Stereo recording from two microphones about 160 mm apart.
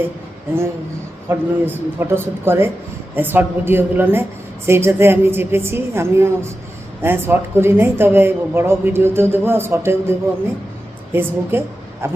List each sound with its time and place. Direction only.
1.3 s a woman's voice: 15° right (ahead or behind)